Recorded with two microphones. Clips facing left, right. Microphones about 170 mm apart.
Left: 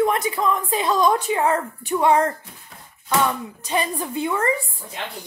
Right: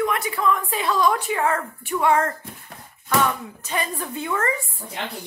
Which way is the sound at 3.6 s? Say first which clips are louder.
Left 3 dB; 15° left (ahead or behind).